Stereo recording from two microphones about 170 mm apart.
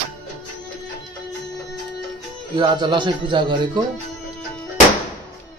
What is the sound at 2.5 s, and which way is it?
Speech, 25° right (ahead or behind).